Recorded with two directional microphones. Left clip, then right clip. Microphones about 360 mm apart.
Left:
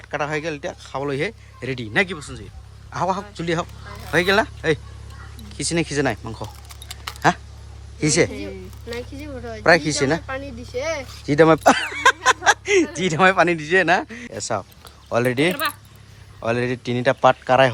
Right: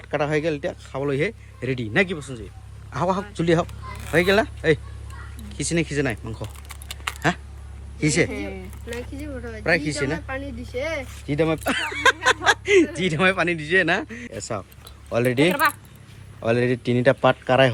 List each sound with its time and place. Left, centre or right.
0.0 s speech: centre
8.9 s speech: left
9.6 s speech: centre
10.2 s speech: left
11.6 s speech: centre